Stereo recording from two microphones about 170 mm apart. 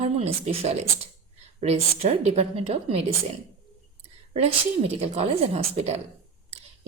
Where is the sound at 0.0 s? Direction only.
35° right (ahead or behind).